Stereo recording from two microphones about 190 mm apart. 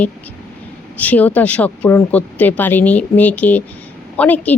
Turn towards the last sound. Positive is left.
turn(degrees=10)  # may be behind; listen again after turning